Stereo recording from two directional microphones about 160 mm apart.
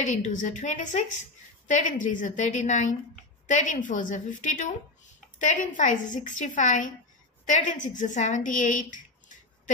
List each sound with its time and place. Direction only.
0.0 s a woman's voice: 45° left (ahead or behind)